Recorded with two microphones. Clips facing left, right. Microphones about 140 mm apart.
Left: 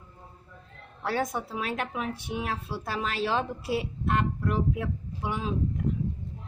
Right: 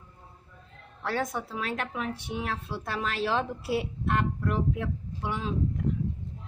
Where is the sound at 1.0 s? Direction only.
15° left (ahead or behind).